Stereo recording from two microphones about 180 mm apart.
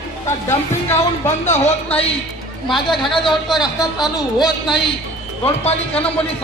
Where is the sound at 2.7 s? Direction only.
Centre (ahead or behind).